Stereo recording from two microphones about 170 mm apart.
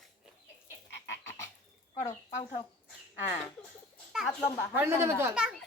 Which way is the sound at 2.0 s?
40° left (ahead or behind).